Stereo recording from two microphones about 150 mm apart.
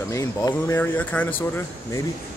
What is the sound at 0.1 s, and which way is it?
Speech, 25° left (ahead or behind).